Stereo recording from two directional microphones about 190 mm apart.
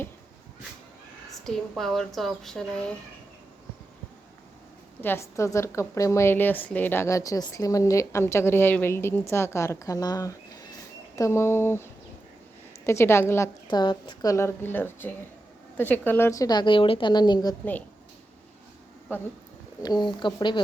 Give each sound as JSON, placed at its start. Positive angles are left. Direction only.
{"t": 1.5, "sound": "speech", "side_deg": 0}
{"t": 4.9, "sound": "a woman's voice", "side_deg": 10}
{"t": 12.8, "sound": "a woman's voice", "side_deg": 15}
{"t": 19.8, "sound": "a woman's voice", "side_deg": 20}